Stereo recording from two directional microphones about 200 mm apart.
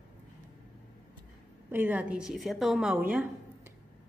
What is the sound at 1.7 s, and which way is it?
A woman's voice, 10° right (ahead or behind).